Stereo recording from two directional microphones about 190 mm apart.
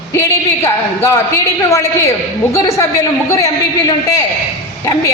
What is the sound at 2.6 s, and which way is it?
A man's voice, 15° left (ahead or behind).